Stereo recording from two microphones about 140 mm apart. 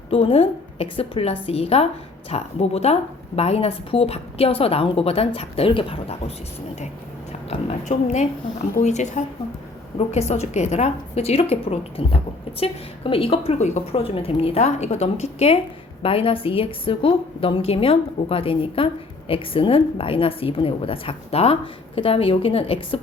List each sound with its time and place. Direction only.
0.1 s a woman's voice: 40° left (ahead or behind)
7.9 s a woman's voice: 55° left (ahead or behind)